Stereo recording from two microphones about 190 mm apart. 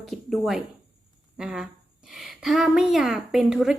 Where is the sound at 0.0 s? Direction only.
Centre (ahead or behind).